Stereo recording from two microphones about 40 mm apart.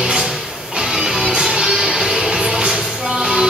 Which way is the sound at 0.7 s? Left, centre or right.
Centre.